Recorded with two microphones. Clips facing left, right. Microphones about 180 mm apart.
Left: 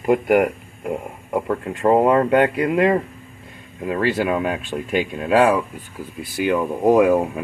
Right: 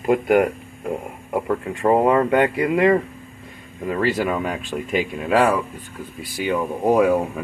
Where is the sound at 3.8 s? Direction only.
5° left (ahead or behind).